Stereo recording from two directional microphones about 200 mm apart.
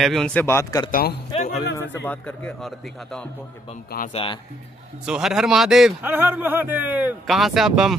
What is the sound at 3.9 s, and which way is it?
Speech, 50° left (ahead or behind).